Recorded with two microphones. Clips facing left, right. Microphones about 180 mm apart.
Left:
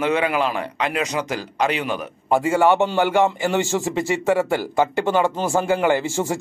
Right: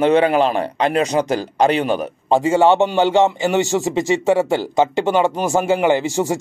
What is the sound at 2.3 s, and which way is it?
Speech, 20° right (ahead or behind).